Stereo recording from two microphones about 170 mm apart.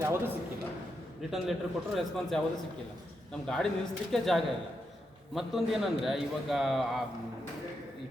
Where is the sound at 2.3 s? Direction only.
Centre (ahead or behind).